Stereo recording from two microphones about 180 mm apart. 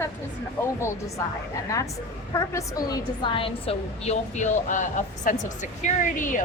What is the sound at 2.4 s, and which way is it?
A woman's voice, 20° left (ahead or behind).